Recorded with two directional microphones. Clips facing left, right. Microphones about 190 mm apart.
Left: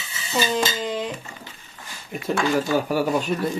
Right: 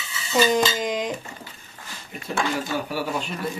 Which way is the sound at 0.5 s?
15° right (ahead or behind).